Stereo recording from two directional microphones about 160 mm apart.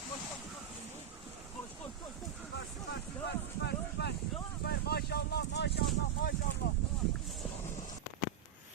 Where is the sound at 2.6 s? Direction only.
90° left.